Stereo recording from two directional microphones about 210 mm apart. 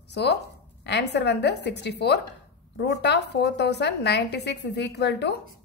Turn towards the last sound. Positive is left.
turn(degrees=55)  # may be behind; listen again after turning